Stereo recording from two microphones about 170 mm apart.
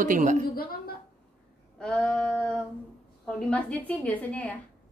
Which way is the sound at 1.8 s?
5° left (ahead or behind).